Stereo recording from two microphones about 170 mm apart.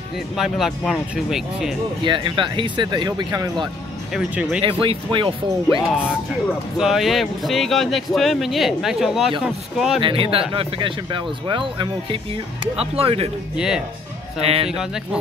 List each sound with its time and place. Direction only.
0.4 s speech: centre (ahead or behind)
2.0 s speech: 30° right (ahead or behind)
4.1 s speech: 5° right (ahead or behind)
4.6 s speech: 30° right (ahead or behind)
6.8 s speech: centre (ahead or behind)
9.9 s speech: 30° right (ahead or behind)
13.6 s speech: 5° right (ahead or behind)
14.4 s speech: 35° right (ahead or behind)